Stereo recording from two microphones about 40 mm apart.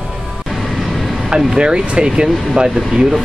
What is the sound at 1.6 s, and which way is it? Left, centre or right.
Speech, right.